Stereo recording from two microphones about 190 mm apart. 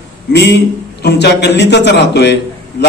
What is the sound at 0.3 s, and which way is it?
A man's voice, 60° left (ahead or behind).